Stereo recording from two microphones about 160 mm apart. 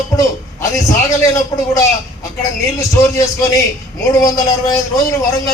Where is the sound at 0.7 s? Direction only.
20° left (ahead or behind).